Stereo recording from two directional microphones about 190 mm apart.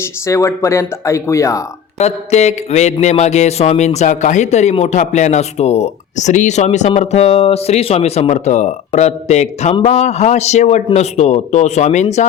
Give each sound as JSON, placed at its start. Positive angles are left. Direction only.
{"t": 0.0, "sound": "speech", "side_deg": 15}
{"t": 2.0, "sound": "speech", "side_deg": 35}